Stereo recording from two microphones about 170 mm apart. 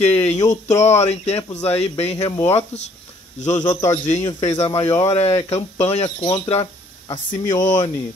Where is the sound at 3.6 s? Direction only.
20° left (ahead or behind).